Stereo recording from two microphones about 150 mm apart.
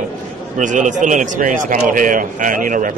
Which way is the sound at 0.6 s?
55° right (ahead or behind).